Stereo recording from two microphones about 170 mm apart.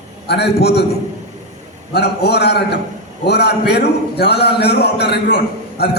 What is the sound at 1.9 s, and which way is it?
A man's voice, 75° left (ahead or behind).